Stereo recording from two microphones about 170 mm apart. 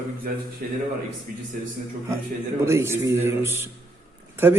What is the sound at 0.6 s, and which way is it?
Speech, 55° right (ahead or behind).